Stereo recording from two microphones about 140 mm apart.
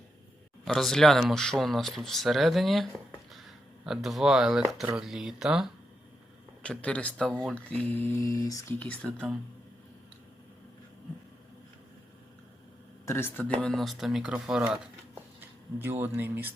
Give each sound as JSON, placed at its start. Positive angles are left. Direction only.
{"t": 0.6, "sound": "speech", "side_deg": 0}
{"t": 6.6, "sound": "speech", "side_deg": 10}
{"t": 8.8, "sound": "speech", "side_deg": 5}
{"t": 13.1, "sound": "speech", "side_deg": 15}
{"t": 13.6, "sound": "speech", "side_deg": 5}